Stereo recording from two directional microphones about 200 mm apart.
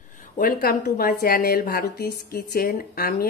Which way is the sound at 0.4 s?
40° left (ahead or behind).